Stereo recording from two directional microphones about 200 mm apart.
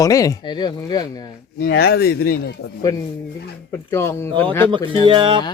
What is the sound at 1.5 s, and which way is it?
A man's voice, 55° left (ahead or behind).